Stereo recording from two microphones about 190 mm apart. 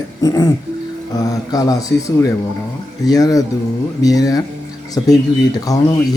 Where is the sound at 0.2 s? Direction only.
20° left (ahead or behind).